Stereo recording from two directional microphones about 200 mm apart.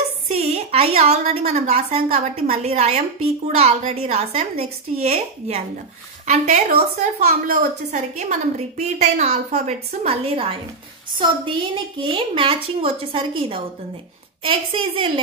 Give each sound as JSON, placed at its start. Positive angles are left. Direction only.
{"t": 0.4, "sound": "a woman's voice", "side_deg": -30}